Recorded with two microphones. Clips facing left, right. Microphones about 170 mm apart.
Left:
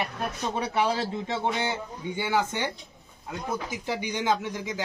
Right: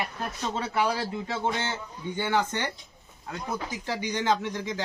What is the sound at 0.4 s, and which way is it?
Speech, 15° left (ahead or behind).